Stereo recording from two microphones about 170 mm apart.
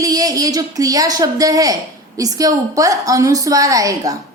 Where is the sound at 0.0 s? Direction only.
20° right (ahead or behind).